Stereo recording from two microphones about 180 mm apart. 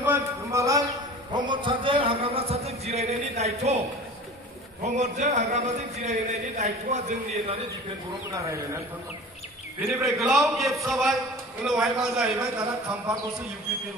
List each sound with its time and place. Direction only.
0.0 s a sound: 15° right (ahead or behind); by 3.8 s 35° right (ahead or behind)
4.8 s a man's voice: 40° right (ahead or behind)
8.3 s speech: 20° right (ahead or behind)
9.8 s a man's voice: centre (ahead or behind)